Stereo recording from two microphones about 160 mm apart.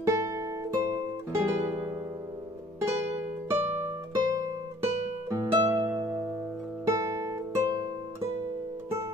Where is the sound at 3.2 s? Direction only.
10° right (ahead or behind).